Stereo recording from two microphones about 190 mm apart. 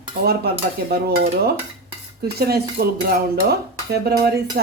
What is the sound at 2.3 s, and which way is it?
Speech, 55° right (ahead or behind).